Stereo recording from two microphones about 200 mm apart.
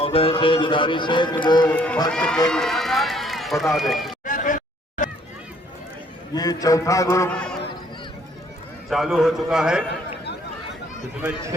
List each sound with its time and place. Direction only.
0.0 s speech: 30° left (ahead or behind)
1.7 s a man's voice: 5° left (ahead or behind)
4.3 s a sound: 40° left (ahead or behind)
6.3 s a man's voice: 20° left (ahead or behind)
8.9 s a man's voice: centre (ahead or behind)
11.2 s speech: 5° right (ahead or behind)